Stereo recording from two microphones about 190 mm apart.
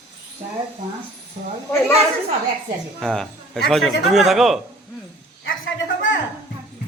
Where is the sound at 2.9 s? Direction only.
Centre (ahead or behind).